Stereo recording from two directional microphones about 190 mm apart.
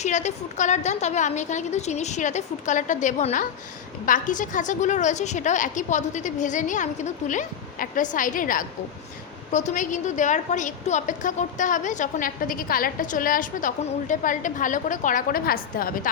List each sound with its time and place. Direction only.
0.0 s a woman's voice: 40° left (ahead or behind)